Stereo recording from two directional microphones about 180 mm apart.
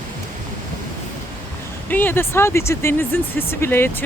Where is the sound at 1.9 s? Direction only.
10° left (ahead or behind).